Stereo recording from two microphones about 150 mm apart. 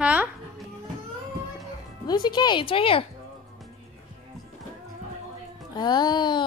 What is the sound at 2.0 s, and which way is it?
Speech, 30° left (ahead or behind).